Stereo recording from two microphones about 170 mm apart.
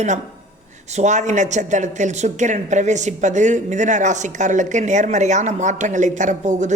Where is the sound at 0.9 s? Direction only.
40° right (ahead or behind).